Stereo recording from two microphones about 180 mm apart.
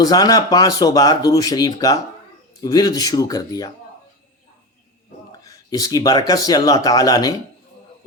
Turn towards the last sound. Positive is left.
turn(degrees=20)  # may be behind; listen again after turning